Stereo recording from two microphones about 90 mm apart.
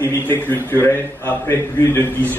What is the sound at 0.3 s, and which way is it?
A man's voice, 25° left (ahead or behind).